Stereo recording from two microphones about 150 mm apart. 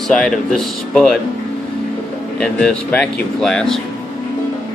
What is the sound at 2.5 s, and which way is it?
Speech, 5° left (ahead or behind).